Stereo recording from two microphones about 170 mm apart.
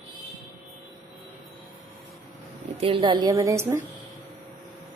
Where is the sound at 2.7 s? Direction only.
30° right (ahead or behind).